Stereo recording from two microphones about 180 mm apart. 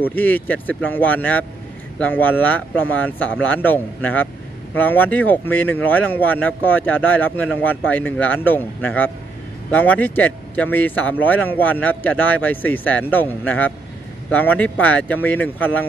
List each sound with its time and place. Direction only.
0.0 s speech: 10° left (ahead or behind)